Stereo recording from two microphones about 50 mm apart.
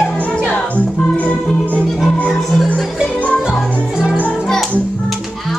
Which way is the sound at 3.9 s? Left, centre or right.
Centre.